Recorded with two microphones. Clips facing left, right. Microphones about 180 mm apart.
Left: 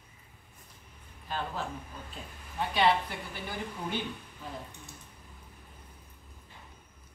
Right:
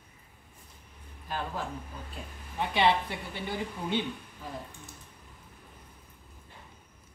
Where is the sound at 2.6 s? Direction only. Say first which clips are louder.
Right 1 dB; 25° right (ahead or behind).